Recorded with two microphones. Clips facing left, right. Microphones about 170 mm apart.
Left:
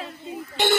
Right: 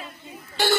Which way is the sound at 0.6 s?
20° left (ahead or behind).